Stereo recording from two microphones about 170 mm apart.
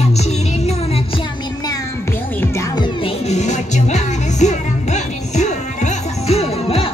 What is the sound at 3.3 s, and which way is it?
Music, 40° left (ahead or behind).